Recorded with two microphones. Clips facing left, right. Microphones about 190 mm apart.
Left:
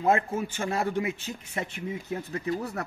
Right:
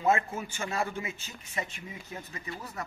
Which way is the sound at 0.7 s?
60° left (ahead or behind).